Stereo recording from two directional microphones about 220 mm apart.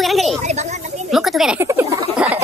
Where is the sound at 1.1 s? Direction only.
Centre (ahead or behind).